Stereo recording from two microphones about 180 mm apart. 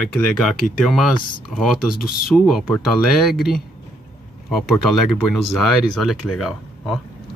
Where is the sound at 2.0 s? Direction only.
55° left (ahead or behind).